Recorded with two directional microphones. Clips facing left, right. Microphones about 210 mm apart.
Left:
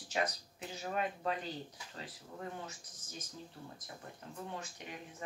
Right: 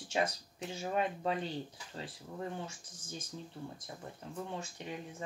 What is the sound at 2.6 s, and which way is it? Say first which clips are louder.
Speech: right 3 dB; 30° right (ahead or behind).